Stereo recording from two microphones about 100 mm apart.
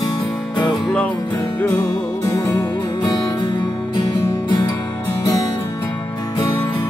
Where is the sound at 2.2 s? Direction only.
25° left (ahead or behind).